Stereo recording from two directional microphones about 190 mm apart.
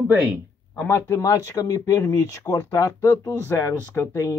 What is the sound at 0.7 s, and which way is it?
Speech, 10° left (ahead or behind).